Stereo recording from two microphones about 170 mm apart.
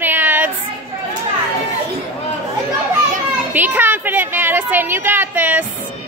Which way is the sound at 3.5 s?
10° right (ahead or behind).